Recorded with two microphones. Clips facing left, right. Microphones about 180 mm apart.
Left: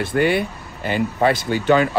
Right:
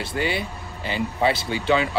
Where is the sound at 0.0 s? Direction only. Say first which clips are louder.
Left 7 dB; 55° left (ahead or behind).